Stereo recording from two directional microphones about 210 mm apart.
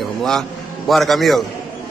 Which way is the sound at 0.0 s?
Centre (ahead or behind).